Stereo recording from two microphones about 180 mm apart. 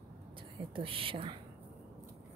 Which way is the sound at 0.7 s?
30° right (ahead or behind).